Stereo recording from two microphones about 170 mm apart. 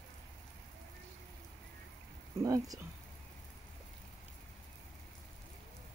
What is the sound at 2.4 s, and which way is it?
Speech, 20° right (ahead or behind).